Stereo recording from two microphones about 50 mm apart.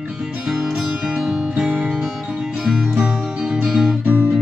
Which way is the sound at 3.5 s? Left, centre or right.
Centre.